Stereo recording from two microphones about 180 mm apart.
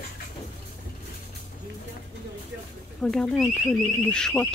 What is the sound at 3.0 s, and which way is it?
Speech, 5° left (ahead or behind).